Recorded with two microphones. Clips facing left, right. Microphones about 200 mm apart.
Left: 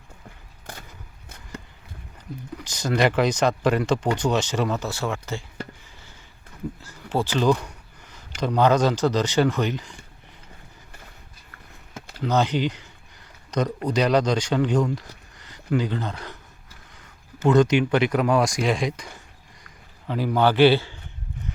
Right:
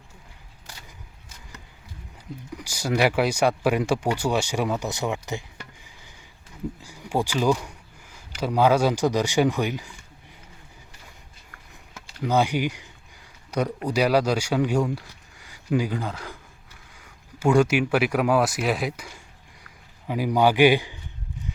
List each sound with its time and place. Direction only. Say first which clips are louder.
0.7 s a sound: left 7 dB; 55° left (ahead or behind)
2.6 s speech: left 1 dB; 10° right (ahead or behind)
6.8 s speech: even; 15° right (ahead or behind)
12.2 s speech: even; 10° right (ahead or behind)